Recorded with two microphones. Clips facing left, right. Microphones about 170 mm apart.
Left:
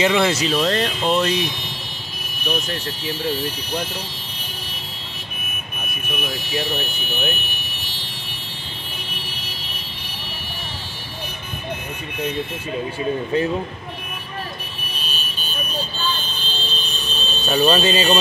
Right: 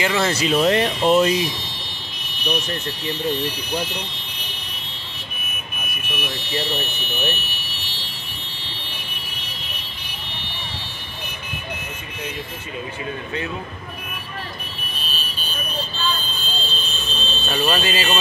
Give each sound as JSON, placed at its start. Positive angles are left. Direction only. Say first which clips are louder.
{"t": 0.0, "sound": "speech", "louder": "left 4 dB", "side_deg": 15}
{"t": 0.3, "sound": "speech", "louder": "even", "side_deg": 0}
{"t": 0.6, "sound": "speech", "louder": "right 3 dB", "side_deg": -15}
{"t": 2.4, "sound": "speech", "louder": "even", "side_deg": 5}
{"t": 6.3, "sound": "speech", "louder": "even", "side_deg": 10}
{"t": 17.5, "sound": "speech", "louder": "left 5 dB", "side_deg": 20}